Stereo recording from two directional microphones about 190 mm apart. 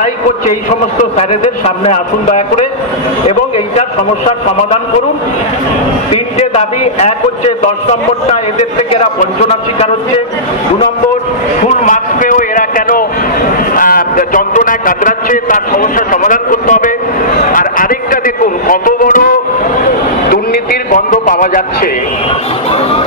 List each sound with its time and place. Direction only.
1.1 s a man's voice: 35° left (ahead or behind)
6.1 s a man's voice: 35° left (ahead or behind)
11.6 s a man's voice: 35° left (ahead or behind)
17.5 s a sound: 45° left (ahead or behind)
20.9 s a man's voice: 45° left (ahead or behind)